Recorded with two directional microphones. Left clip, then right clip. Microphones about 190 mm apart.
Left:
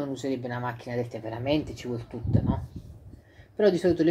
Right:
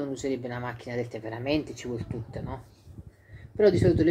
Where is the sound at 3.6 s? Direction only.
10° left (ahead or behind).